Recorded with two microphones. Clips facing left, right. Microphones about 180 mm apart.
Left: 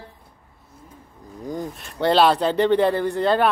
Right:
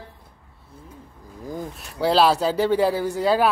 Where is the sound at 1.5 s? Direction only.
5° right (ahead or behind).